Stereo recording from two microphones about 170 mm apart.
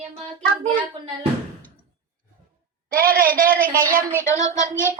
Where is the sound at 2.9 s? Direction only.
60° right (ahead or behind).